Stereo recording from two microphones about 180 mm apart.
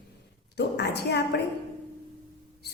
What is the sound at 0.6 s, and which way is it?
Speech, 70° left (ahead or behind).